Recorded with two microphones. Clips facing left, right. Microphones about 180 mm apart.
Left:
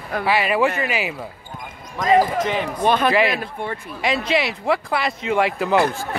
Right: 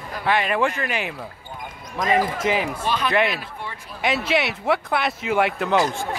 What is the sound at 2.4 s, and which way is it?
Speech, 5° right (ahead or behind).